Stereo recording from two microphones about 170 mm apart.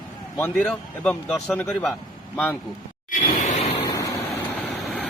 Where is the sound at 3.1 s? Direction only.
50° left (ahead or behind).